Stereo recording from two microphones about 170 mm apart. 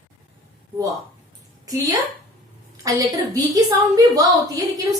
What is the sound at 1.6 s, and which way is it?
A woman's voice, 20° right (ahead or behind).